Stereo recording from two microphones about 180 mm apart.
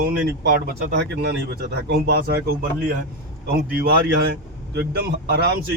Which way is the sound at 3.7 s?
60° right (ahead or behind).